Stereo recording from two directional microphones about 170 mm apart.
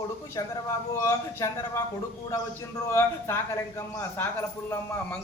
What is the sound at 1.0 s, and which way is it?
Speech, 15° left (ahead or behind).